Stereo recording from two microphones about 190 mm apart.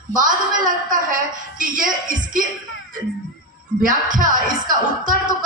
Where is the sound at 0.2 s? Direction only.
45° right (ahead or behind).